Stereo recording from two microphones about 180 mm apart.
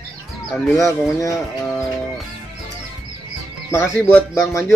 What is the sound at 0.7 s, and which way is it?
Speech, 15° left (ahead or behind).